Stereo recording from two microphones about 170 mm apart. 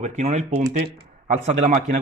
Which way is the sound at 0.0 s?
40° right (ahead or behind).